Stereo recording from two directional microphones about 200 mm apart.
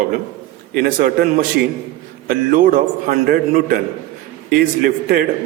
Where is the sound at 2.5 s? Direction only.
40° right (ahead or behind).